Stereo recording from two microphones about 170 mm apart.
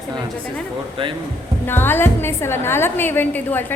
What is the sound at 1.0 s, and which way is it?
Speech, 30° right (ahead or behind).